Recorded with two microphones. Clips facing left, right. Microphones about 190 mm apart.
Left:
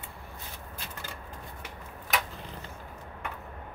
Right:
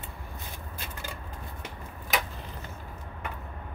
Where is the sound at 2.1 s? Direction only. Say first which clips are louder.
Right 1 dB; centre (ahead or behind).